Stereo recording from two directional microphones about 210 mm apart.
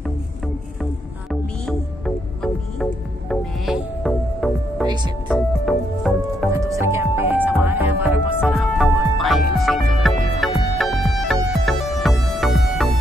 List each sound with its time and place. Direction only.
1.3 s music: centre (ahead or behind)
4.8 s music: 20° right (ahead or behind)
5.3 s music: centre (ahead or behind)
6.8 s music: 10° right (ahead or behind)